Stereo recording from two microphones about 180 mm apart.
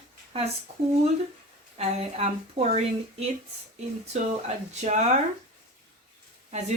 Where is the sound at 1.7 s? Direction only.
35° right (ahead or behind).